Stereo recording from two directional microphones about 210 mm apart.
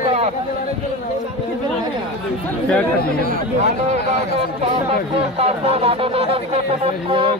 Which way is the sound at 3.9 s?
30° right (ahead or behind).